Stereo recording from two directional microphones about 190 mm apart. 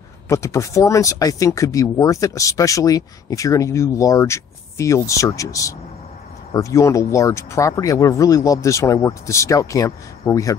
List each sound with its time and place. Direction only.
0.3 s speech: 15° left (ahead or behind)